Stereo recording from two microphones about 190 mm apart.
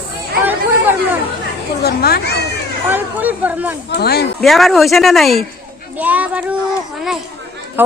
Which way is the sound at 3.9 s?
60° left (ahead or behind).